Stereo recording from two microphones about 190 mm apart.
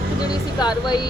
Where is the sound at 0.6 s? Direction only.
20° left (ahead or behind).